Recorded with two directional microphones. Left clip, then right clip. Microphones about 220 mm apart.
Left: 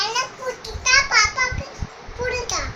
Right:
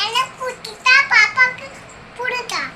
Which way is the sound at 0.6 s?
25° left (ahead or behind).